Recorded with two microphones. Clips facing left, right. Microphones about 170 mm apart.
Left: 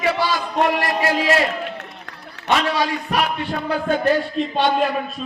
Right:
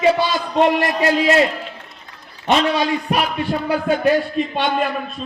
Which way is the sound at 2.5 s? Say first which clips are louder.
Right 3 dB; 20° right (ahead or behind).